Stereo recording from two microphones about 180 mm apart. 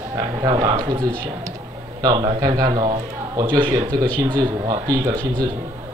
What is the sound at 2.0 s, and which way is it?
A man's voice, 20° right (ahead or behind).